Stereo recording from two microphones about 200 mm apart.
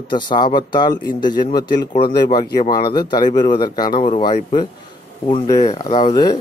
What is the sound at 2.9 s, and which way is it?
Speech, 20° left (ahead or behind).